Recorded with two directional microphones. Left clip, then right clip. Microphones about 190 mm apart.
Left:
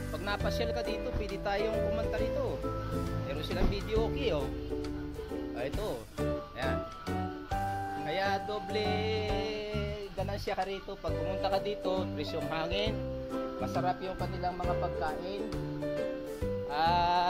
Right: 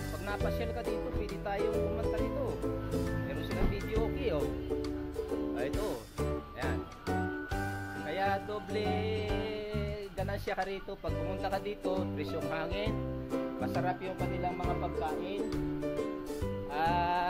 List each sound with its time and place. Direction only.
0.3 s music: 20° left (ahead or behind)
3.9 s speech: 15° left (ahead or behind)
8.1 s music: 15° left (ahead or behind)
11.2 s speech: 5° left (ahead or behind)
13.6 s music: 5° left (ahead or behind)
16.7 s speech: 15° left (ahead or behind)